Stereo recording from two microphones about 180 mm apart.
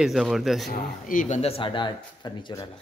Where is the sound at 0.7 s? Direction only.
50° left (ahead or behind); by 2.7 s 25° left (ahead or behind).